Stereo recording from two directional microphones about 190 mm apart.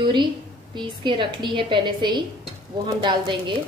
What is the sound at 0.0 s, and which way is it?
A woman's voice, 25° right (ahead or behind).